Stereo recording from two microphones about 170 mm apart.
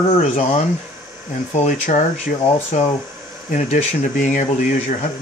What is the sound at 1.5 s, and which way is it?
Speech, 45° left (ahead or behind).